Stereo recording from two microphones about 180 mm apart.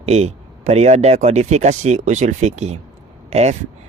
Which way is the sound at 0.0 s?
35° right (ahead or behind).